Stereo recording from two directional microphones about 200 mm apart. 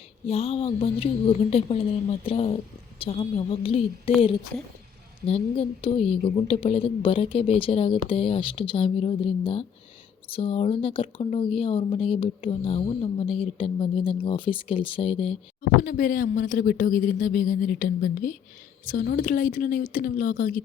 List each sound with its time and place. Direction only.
0.3 s speech: 30° left (ahead or behind)
5.2 s speech: 30° left (ahead or behind)
15.8 s speech: 45° left (ahead or behind)